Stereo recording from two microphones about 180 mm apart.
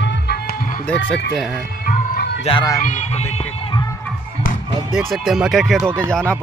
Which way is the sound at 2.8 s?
40° left (ahead or behind).